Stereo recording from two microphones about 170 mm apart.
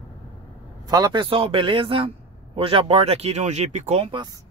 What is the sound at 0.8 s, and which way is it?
Speech, 25° right (ahead or behind).